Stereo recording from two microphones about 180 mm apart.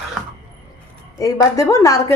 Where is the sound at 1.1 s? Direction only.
20° left (ahead or behind).